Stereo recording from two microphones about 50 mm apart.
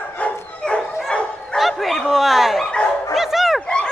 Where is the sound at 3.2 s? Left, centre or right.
Centre.